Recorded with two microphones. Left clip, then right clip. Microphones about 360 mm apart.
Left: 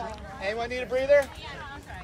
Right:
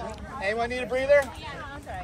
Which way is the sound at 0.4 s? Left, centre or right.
Right.